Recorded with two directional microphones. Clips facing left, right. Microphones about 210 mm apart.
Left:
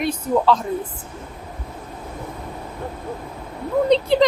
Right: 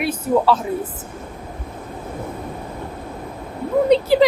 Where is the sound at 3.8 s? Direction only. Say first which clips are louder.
Right 2 dB; 5° right (ahead or behind).